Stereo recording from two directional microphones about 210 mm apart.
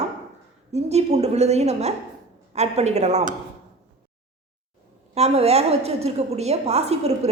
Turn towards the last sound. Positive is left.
turn(degrees=-30)  # may be behind; listen again after turning